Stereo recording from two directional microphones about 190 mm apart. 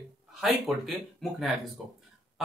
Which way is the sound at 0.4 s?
Centre (ahead or behind).